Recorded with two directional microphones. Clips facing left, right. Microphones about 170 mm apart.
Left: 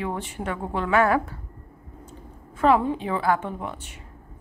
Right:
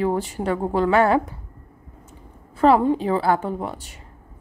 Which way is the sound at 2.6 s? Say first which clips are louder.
Right 4 dB; 35° right (ahead or behind).